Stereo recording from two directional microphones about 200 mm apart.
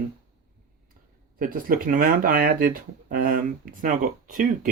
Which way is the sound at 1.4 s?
45° right (ahead or behind).